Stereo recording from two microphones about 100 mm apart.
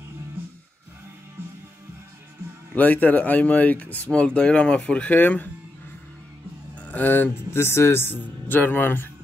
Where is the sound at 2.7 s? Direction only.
15° left (ahead or behind).